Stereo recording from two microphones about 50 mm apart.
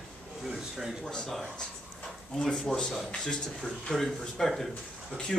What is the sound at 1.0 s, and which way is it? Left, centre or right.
Speech, centre.